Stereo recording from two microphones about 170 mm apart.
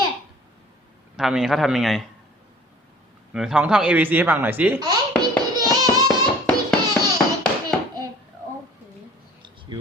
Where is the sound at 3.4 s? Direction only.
5° right (ahead or behind).